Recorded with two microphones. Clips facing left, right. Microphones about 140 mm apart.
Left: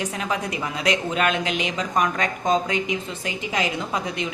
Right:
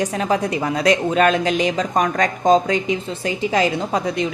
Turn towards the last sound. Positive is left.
turn(degrees=-35)  # may be behind; listen again after turning